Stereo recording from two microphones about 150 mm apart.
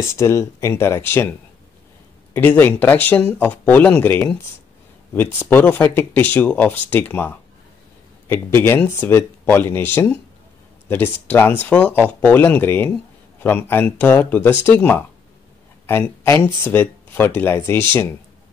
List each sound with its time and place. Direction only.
0.0 s speech: 20° left (ahead or behind)
2.3 s speech: 15° left (ahead or behind)
5.5 s speech: 15° left (ahead or behind)